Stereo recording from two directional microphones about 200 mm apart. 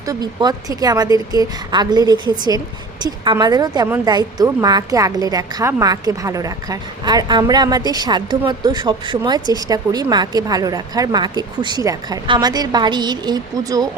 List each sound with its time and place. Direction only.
0.0 s speech: 20° right (ahead or behind)